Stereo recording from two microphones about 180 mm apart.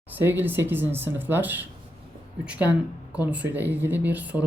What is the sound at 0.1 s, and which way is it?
Speech, 10° right (ahead or behind).